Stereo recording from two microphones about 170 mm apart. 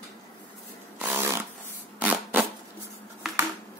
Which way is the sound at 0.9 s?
10° right (ahead or behind).